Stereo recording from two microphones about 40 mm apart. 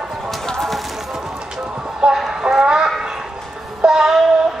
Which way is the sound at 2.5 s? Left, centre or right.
Centre.